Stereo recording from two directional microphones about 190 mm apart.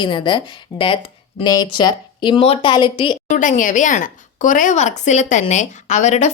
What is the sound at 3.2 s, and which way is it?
Speech, 40° left (ahead or behind).